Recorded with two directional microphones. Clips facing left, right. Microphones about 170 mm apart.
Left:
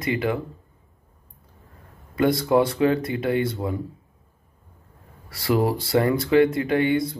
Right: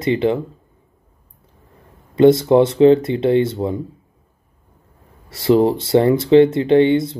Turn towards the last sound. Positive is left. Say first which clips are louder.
# right 8 dB
turn(degrees=-25)  # may be behind; listen again after turning